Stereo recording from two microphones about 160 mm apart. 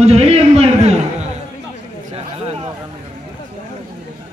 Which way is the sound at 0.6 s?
40° right (ahead or behind).